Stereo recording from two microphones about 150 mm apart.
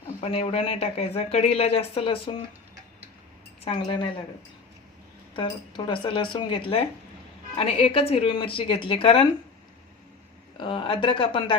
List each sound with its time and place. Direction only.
0.2 s speech: 45° left (ahead or behind)
3.6 s speech: 40° left (ahead or behind)
5.3 s speech: 35° left (ahead or behind)
10.6 s speech: 35° left (ahead or behind)